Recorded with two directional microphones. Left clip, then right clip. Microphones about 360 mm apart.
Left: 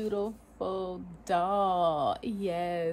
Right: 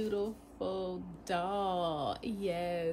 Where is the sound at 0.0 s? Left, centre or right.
Centre.